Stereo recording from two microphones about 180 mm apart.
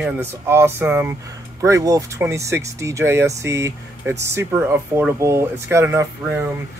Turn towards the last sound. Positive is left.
turn(degrees=-10)  # may be behind; listen again after turning